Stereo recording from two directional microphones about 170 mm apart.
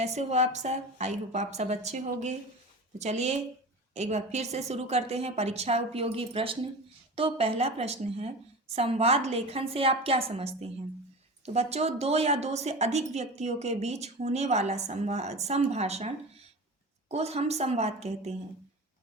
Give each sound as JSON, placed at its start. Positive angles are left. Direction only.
{"t": 0.0, "sound": "a woman's voice", "side_deg": -40}